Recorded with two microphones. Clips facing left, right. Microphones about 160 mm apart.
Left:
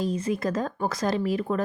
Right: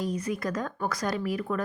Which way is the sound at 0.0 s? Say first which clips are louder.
Left 4 dB; 25° left (ahead or behind).